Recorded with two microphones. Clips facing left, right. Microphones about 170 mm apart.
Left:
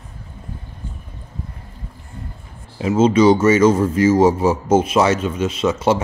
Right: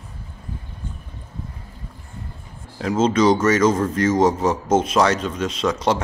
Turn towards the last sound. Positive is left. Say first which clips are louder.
# left 3 dB
turn(degrees=5)  # may be behind; listen again after turning